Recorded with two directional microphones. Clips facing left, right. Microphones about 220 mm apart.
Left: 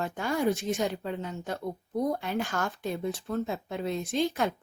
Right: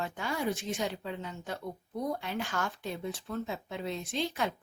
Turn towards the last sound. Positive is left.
turn(degrees=45)  # may be behind; listen again after turning